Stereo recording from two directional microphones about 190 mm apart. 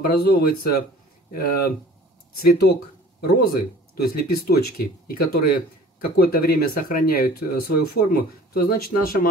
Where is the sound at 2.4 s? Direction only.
55° left (ahead or behind).